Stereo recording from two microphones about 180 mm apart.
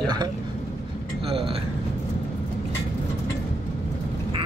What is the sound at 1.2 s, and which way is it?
Speech, 30° right (ahead or behind).